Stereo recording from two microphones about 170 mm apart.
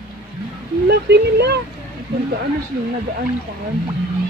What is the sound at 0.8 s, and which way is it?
Speech, 75° right (ahead or behind).